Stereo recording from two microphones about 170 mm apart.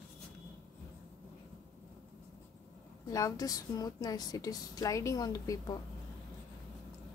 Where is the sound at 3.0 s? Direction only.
20° left (ahead or behind).